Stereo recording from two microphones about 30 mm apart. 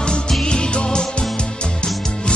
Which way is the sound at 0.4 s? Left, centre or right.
Left.